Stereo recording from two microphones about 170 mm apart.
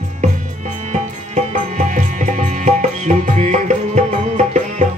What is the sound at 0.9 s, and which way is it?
Music, 45° right (ahead or behind).